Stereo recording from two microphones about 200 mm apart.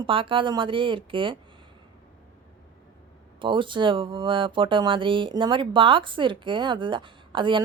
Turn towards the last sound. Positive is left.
turn(degrees=-25)  # may be behind; listen again after turning